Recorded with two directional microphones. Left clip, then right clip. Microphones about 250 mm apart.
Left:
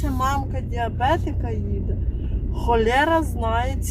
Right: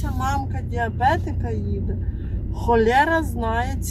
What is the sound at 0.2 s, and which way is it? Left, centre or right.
Speech, left.